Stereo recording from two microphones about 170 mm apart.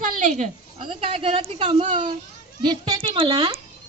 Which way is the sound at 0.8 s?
35° right (ahead or behind).